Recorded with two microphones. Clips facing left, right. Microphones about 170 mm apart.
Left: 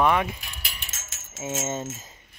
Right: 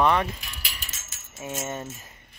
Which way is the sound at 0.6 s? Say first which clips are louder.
Even; 45° left (ahead or behind).